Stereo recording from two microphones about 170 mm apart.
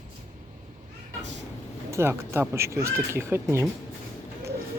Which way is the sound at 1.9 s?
15° right (ahead or behind).